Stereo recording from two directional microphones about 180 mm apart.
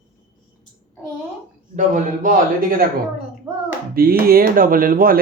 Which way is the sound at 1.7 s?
45° right (ahead or behind).